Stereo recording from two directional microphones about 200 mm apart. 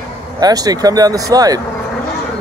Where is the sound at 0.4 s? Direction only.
20° right (ahead or behind).